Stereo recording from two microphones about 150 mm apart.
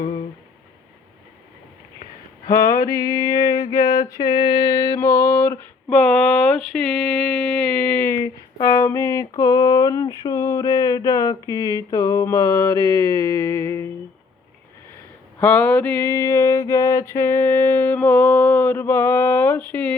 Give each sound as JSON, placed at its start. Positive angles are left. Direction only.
{"t": 2.5, "sound": "mantra", "side_deg": 20}
{"t": 7.7, "sound": "a sound", "side_deg": 10}
{"t": 11.5, "sound": "mantra", "side_deg": 25}
{"t": 15.4, "sound": "mantra", "side_deg": 15}